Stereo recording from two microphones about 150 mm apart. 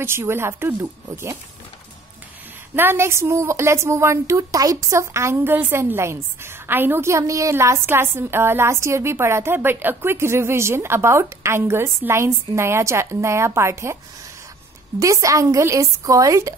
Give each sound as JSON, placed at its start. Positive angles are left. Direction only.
{"t": 0.0, "sound": "a woman's voice", "side_deg": -15}
{"t": 2.7, "sound": "a woman's voice", "side_deg": -15}
{"t": 15.0, "sound": "speech", "side_deg": -20}